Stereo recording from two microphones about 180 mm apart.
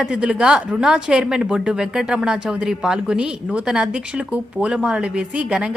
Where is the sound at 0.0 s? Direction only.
5° right (ahead or behind).